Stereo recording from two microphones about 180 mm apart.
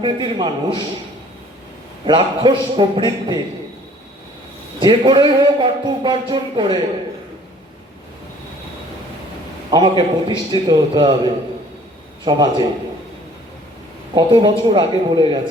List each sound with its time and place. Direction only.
0.0 s speech: 25° right (ahead or behind)
2.0 s speech: 25° right (ahead or behind)
4.8 s speech: 25° right (ahead or behind)
9.6 s speech: 25° right (ahead or behind)
14.2 s speech: 25° right (ahead or behind)